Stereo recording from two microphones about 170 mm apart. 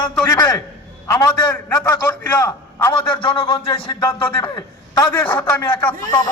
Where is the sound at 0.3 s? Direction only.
15° left (ahead or behind).